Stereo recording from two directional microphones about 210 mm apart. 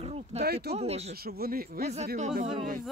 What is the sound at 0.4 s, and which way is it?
Speech, 50° right (ahead or behind).